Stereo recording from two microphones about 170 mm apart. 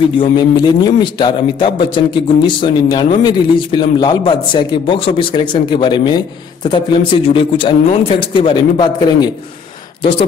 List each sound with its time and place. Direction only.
0.2 s a man's voice: 25° left (ahead or behind)